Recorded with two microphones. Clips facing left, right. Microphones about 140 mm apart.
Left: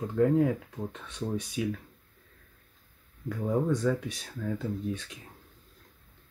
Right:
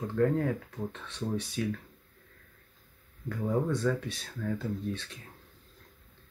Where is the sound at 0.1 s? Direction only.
10° left (ahead or behind).